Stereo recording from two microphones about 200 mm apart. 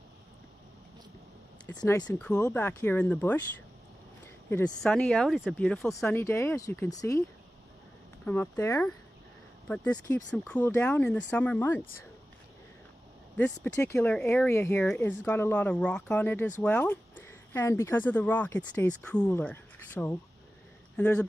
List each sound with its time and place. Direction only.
1.7 s speech: 20° left (ahead or behind)
4.5 s speech: 10° left (ahead or behind)
6.1 s speech: 10° left (ahead or behind)
8.3 s speech: 10° left (ahead or behind)
13.4 s speech: 10° left (ahead or behind)